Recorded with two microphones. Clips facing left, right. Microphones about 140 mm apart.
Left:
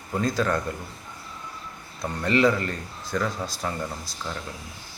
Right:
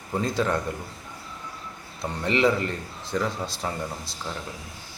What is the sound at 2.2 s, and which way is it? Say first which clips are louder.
A man's voice: left 1 dB; 20° right (ahead or behind).